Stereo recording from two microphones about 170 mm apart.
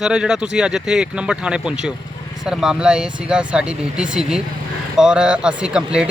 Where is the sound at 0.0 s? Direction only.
5° right (ahead or behind).